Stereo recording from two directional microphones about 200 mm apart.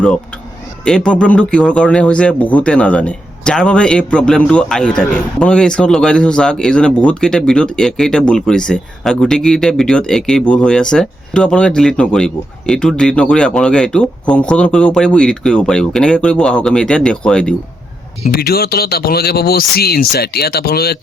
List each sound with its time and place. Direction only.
0.9 s speech: 5° left (ahead or behind)
18.3 s speech: 50° left (ahead or behind)